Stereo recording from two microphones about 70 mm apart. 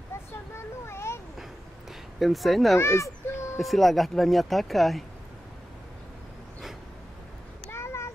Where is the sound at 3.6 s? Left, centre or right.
Centre.